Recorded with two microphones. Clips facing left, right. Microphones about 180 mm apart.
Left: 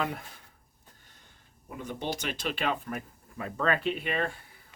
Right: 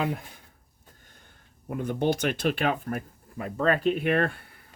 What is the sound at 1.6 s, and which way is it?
Speech, 55° right (ahead or behind).